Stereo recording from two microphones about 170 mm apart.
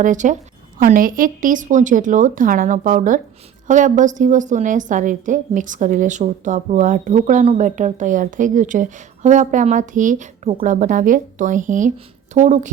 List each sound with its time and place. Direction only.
0.0 s a woman's voice: 45° right (ahead or behind)